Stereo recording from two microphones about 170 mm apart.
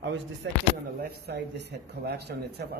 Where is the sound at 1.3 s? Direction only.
70° right (ahead or behind).